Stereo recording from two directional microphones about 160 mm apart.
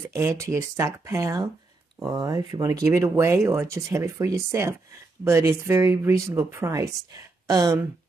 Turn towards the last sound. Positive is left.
turn(degrees=-25)  # may be behind; listen again after turning